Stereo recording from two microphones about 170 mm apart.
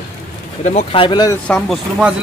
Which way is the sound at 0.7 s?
35° left (ahead or behind).